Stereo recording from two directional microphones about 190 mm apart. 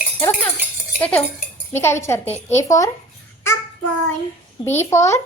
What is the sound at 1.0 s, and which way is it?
A woman's voice, 10° left (ahead or behind).